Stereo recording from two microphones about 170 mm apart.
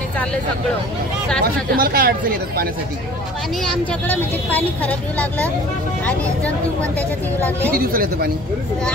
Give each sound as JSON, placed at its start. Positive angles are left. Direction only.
{"t": 1.4, "sound": "speech", "side_deg": -60}
{"t": 3.6, "sound": "speech", "side_deg": 5}
{"t": 7.7, "sound": "speech", "side_deg": -60}